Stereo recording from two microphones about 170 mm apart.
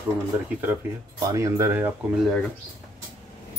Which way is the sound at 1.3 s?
15° right (ahead or behind).